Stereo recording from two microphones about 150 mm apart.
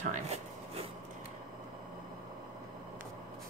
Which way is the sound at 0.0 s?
50° right (ahead or behind).